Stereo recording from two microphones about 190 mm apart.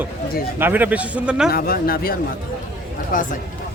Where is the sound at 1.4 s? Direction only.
50° left (ahead or behind).